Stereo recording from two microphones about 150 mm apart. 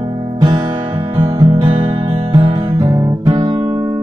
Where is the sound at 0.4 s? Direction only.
30° right (ahead or behind).